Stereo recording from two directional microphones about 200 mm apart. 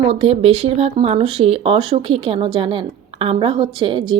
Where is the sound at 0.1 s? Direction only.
30° right (ahead or behind).